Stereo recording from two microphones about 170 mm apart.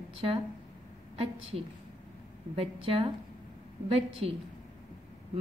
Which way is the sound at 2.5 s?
35° right (ahead or behind).